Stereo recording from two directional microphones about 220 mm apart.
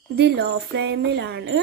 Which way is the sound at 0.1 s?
45° right (ahead or behind).